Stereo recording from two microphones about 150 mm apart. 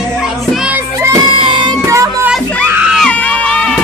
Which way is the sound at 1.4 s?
30° right (ahead or behind).